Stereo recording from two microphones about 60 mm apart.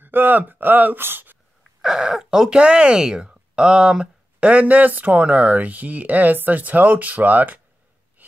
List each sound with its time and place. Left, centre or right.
0.0 s speech: right
1.8 s speech: centre; by 7.6 s right
8.2 s gasp: right